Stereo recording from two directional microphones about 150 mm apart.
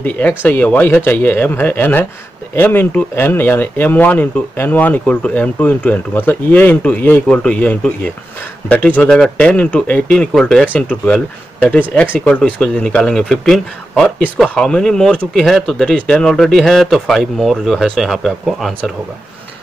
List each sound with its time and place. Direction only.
0.0 s speech: 10° left (ahead or behind)